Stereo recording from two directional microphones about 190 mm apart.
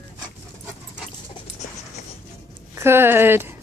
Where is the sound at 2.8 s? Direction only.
10° right (ahead or behind).